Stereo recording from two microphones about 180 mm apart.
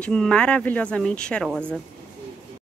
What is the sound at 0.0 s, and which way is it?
Speech, 5° left (ahead or behind).